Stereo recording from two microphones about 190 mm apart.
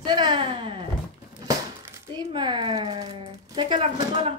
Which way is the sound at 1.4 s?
20° right (ahead or behind).